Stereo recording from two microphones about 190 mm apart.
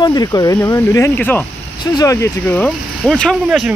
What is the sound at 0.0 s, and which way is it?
Speech, 20° left (ahead or behind).